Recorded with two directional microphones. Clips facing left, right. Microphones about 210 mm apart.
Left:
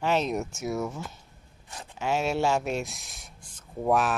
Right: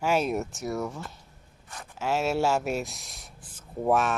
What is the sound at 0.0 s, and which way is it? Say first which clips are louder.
Speech: right 1 dB; 10° right (ahead or behind).